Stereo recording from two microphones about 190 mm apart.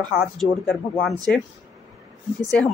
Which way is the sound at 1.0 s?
Centre (ahead or behind).